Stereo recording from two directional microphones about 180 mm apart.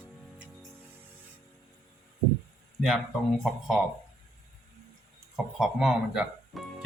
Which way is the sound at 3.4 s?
Centre (ahead or behind).